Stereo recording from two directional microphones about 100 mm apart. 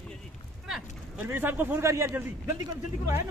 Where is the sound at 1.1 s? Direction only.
20° right (ahead or behind).